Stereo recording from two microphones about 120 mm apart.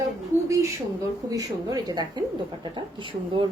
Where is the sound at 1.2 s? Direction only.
30° right (ahead or behind).